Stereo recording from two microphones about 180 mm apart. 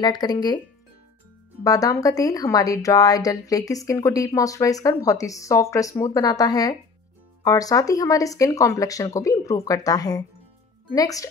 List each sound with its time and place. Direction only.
0.0 s speech: 25° left (ahead or behind)
1.6 s speech: 20° left (ahead or behind)